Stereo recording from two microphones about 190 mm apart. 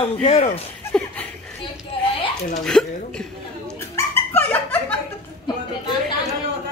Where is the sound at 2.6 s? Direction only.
5° left (ahead or behind).